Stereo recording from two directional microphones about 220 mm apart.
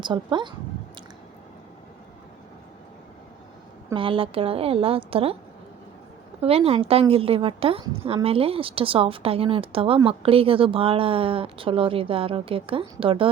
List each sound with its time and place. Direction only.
0.0 s a woman's voice: 20° right (ahead or behind)
3.9 s a woman's voice: 25° right (ahead or behind)
6.4 s a woman's voice: 25° right (ahead or behind)